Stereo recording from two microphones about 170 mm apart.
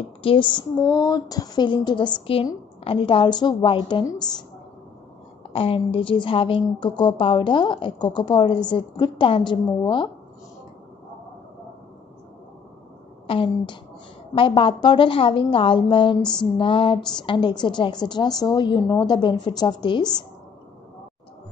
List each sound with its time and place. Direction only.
0.2 s a woman's voice: 30° left (ahead or behind)
5.5 s a woman's voice: 35° left (ahead or behind)
13.3 s a woman's voice: 30° left (ahead or behind)
16.2 s female singing: 5° left (ahead or behind)
16.5 s a woman's voice: 30° left (ahead or behind)